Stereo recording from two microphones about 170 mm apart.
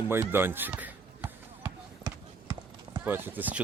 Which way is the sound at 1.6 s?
25° right (ahead or behind).